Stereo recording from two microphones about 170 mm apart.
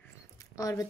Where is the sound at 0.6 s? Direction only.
20° left (ahead or behind).